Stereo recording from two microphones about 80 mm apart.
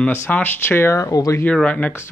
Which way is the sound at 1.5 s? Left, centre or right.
Centre.